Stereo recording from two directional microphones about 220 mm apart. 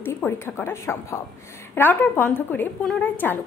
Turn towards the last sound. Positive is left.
turn(degrees=5)  # may be behind; listen again after turning